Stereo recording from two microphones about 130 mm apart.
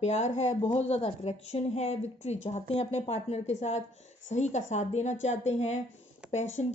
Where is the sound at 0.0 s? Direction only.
60° left (ahead or behind).